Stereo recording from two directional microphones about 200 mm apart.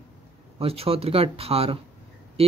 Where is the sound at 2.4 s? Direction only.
30° right (ahead or behind).